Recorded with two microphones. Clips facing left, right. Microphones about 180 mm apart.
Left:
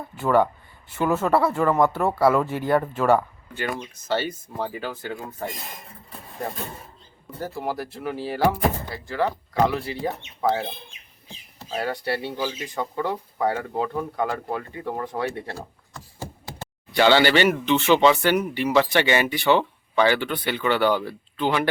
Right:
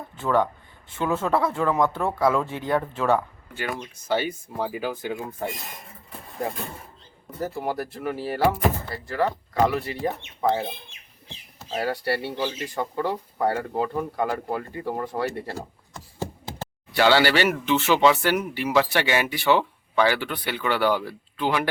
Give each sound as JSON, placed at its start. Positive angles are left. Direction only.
{"t": 0.2, "sound": "speech", "side_deg": 5}
{"t": 4.1, "sound": "speech", "side_deg": -10}
{"t": 7.3, "sound": "speech", "side_deg": 0}
{"t": 11.7, "sound": "speech", "side_deg": -5}
{"t": 16.9, "sound": "speech", "side_deg": -5}